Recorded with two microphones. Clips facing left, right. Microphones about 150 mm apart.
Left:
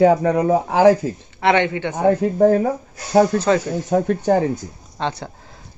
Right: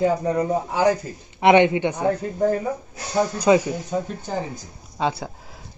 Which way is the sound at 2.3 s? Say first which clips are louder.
Left 7 dB; 60° left (ahead or behind).